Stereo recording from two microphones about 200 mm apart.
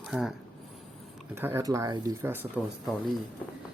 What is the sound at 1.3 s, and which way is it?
Speech, 10° right (ahead or behind).